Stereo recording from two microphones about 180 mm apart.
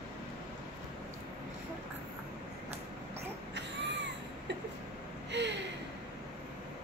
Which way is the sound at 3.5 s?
75° right (ahead or behind).